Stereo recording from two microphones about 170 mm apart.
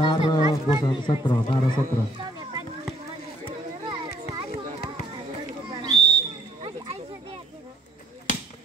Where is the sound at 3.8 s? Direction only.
25° right (ahead or behind).